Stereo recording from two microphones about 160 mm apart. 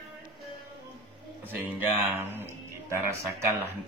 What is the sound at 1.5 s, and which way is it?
Speech, 10° right (ahead or behind).